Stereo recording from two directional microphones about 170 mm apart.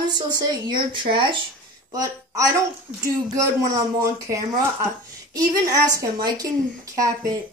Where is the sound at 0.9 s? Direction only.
30° right (ahead or behind).